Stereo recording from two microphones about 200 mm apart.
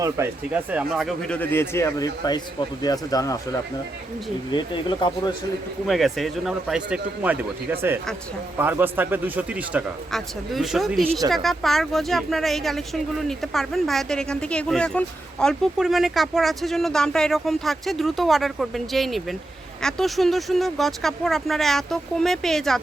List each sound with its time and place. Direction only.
0.0 s speech: 10° right (ahead or behind); by 3.4 s 20° left (ahead or behind)
4.5 s speech: 25° left (ahead or behind)
5.8 s a man's voice: centre (ahead or behind)